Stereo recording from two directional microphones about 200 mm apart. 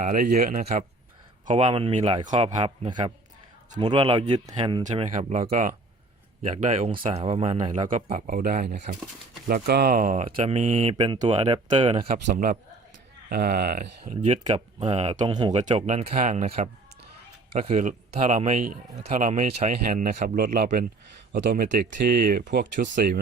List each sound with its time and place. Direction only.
0.0 s speech: 45° right (ahead or behind)
1.5 s speech: 30° right (ahead or behind)
4.8 s speech: 40° right (ahead or behind)
7.0 s speech: 30° right (ahead or behind)
10.8 s speech: 30° right (ahead or behind)
12.0 s speech: 55° right (ahead or behind); by 15.2 s 30° right (ahead or behind)
15.2 s speech: 20° right (ahead or behind)
15.5 s speech: 35° right (ahead or behind)